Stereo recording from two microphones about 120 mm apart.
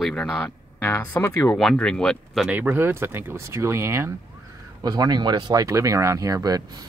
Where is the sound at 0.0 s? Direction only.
5° left (ahead or behind).